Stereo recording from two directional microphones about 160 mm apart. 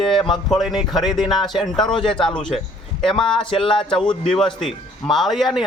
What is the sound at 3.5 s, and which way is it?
Speech, 30° left (ahead or behind).